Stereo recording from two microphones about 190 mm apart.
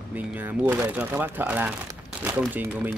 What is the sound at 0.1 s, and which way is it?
Speech, 10° right (ahead or behind).